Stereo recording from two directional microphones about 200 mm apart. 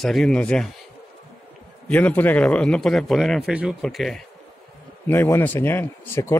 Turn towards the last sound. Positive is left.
turn(degrees=15)  # may be behind; listen again after turning